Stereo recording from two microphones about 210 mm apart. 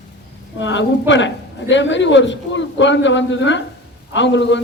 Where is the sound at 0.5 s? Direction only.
60° left (ahead or behind).